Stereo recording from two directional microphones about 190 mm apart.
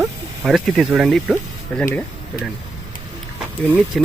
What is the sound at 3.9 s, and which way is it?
Speech, centre (ahead or behind).